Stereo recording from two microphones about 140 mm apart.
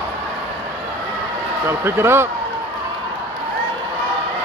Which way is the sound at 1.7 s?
15° right (ahead or behind).